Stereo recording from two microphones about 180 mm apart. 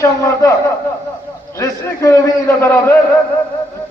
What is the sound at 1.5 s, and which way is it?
A man's voice, 15° left (ahead or behind).